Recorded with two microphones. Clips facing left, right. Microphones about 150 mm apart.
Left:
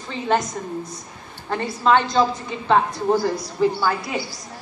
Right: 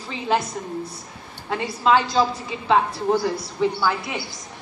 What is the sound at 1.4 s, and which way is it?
A woman's voice, 5° right (ahead or behind).